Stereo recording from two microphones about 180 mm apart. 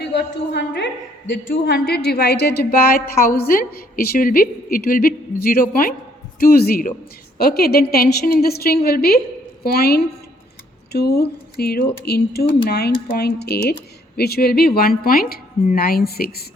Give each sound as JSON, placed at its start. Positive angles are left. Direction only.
{"t": 0.0, "sound": "a woman's voice", "side_deg": 70}